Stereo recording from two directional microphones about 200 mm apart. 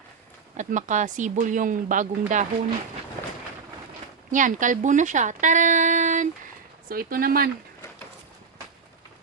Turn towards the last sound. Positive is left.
turn(degrees=-45)  # may be behind; listen again after turning